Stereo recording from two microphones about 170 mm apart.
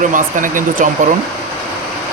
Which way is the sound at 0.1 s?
50° right (ahead or behind).